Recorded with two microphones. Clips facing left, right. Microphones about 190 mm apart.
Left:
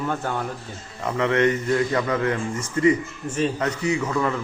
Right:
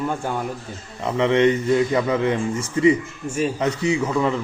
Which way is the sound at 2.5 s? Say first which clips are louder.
Right 2 dB; 10° right (ahead or behind).